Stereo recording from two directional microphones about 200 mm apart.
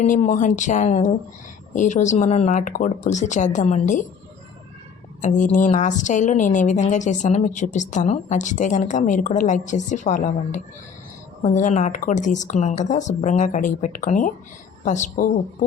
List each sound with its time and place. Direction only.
0.0 s a woman's voice: 40° left (ahead or behind)
5.2 s a woman's voice: 35° left (ahead or behind)